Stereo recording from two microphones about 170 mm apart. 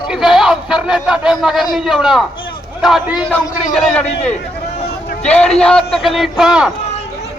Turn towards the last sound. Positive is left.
turn(degrees=-5)  # may be behind; listen again after turning